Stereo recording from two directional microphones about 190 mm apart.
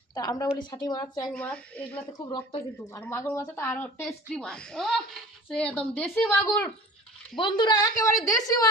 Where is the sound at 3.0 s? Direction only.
15° left (ahead or behind).